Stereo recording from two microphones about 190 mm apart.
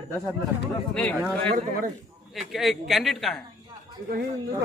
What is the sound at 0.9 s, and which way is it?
Speech, 5° left (ahead or behind).